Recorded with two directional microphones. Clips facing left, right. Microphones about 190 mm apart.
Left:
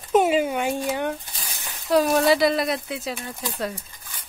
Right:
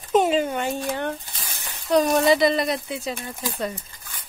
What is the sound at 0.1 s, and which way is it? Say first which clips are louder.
Speech: left 1 dB; 10° left (ahead or behind).